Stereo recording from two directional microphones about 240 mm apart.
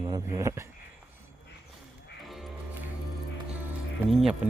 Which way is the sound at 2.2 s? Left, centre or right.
Centre.